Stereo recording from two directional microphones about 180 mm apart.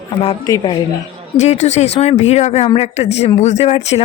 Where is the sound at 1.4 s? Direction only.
40° left (ahead or behind).